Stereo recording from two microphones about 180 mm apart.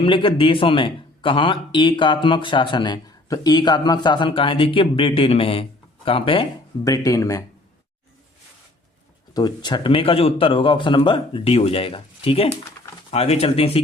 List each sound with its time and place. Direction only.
0.0 s speech: 30° left (ahead or behind)
9.3 s speech: 20° left (ahead or behind)